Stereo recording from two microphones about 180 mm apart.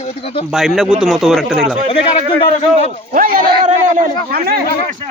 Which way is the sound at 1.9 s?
30° left (ahead or behind).